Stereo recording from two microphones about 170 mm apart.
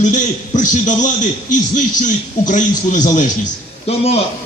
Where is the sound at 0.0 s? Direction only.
45° left (ahead or behind).